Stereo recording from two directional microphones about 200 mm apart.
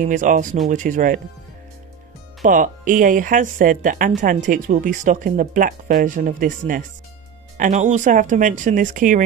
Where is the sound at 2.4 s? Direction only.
40° right (ahead or behind).